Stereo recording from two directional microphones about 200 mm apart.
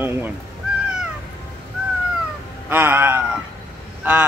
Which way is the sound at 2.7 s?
10° right (ahead or behind).